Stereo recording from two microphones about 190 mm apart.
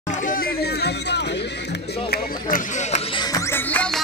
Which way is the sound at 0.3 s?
55° left (ahead or behind).